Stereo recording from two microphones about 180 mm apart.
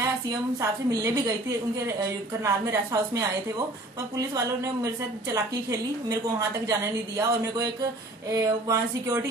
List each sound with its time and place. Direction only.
0.6 s a woman's voice: 15° right (ahead or behind)
4.8 s a woman's voice: 20° right (ahead or behind)